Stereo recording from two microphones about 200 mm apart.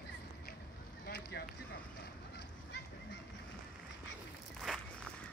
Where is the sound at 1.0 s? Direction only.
50° left (ahead or behind).